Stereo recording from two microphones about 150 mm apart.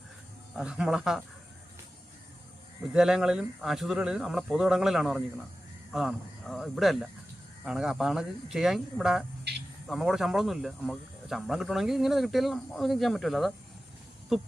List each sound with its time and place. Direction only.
0.5 s speech: 5° right (ahead or behind)
2.9 s speech: 5° right (ahead or behind)